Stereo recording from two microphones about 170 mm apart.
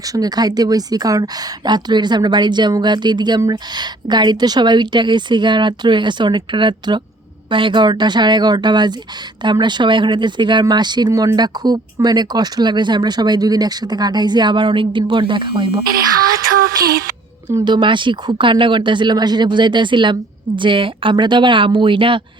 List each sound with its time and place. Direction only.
0.0 s a woman's voice: 20° right (ahead or behind)
16.6 s music: 60° right (ahead or behind)
17.5 s a woman's voice: 25° right (ahead or behind)